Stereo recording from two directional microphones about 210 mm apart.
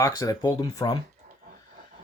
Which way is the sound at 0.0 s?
15° left (ahead or behind).